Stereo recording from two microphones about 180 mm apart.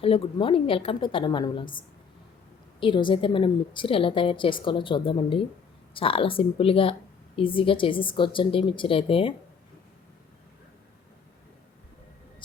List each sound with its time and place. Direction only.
0.0 s a woman's voice: 30° left (ahead or behind)
2.8 s a woman's voice: 25° left (ahead or behind)